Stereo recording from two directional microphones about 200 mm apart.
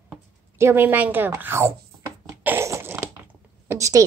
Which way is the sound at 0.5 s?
10° right (ahead or behind).